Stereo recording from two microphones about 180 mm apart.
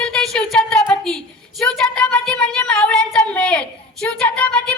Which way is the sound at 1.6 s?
5° left (ahead or behind).